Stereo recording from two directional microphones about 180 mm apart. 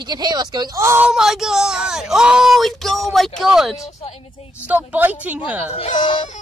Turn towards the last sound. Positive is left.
turn(degrees=30)  # may be behind; listen again after turning